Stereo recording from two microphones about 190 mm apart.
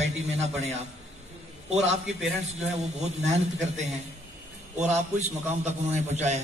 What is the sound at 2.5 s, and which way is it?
A man's voice, 35° right (ahead or behind).